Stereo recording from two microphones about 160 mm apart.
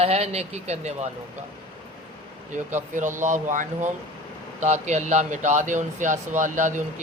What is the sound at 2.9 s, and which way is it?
Speech, 50° right (ahead or behind).